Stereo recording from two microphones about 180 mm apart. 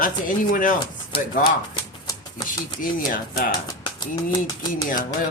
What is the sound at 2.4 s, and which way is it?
Speech, 50° left (ahead or behind).